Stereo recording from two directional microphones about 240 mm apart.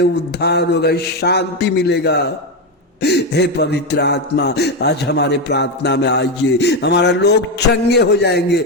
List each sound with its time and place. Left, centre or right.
0.0 s a man's voice: left